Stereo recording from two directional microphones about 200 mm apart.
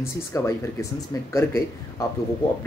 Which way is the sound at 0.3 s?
15° left (ahead or behind).